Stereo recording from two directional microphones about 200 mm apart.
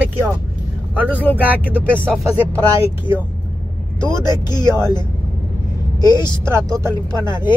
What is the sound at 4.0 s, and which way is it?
Speech, 20° left (ahead or behind).